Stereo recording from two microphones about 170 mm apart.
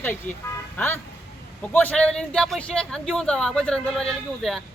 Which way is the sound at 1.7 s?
10° left (ahead or behind).